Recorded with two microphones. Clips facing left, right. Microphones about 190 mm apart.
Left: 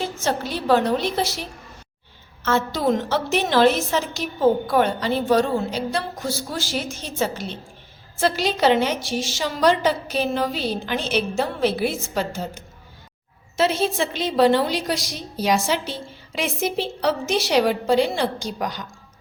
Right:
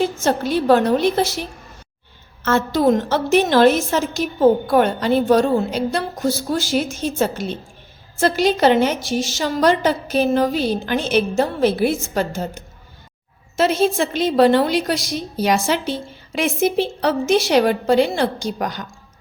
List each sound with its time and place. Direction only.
0.3 s a woman's voice: 50° right (ahead or behind)
2.4 s a woman's voice: 50° right (ahead or behind)